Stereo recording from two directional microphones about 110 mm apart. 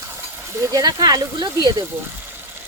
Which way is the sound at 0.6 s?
35° right (ahead or behind).